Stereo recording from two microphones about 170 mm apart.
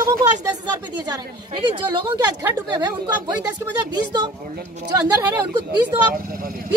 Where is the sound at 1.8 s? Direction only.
25° right (ahead or behind).